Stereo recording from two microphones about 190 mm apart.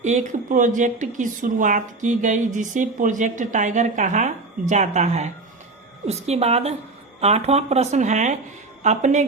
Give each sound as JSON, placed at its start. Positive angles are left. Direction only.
{"t": 0.0, "sound": "speech", "side_deg": -40}